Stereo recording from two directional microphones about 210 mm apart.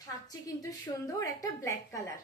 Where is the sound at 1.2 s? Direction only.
15° left (ahead or behind).